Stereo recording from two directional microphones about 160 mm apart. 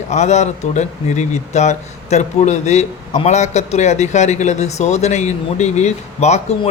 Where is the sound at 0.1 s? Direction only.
45° left (ahead or behind).